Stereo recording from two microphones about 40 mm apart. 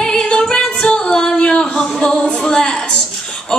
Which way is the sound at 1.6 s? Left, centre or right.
Centre.